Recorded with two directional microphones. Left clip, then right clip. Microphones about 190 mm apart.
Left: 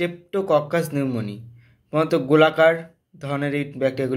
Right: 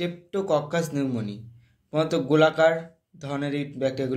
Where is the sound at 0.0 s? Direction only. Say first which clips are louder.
Left 4 dB; 20° left (ahead or behind).